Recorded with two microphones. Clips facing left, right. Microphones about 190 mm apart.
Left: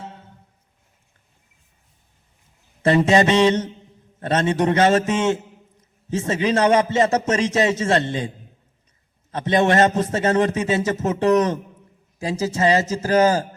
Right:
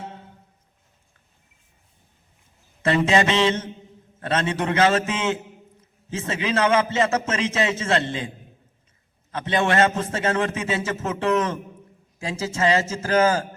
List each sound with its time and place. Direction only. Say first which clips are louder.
2.8 s a man's voice: left 4 dB; 40° left (ahead or behind)
6.1 s a man's voice: left 5 dB; 40° left (ahead or behind)
9.4 s a man's voice: left 4 dB; 40° left (ahead or behind)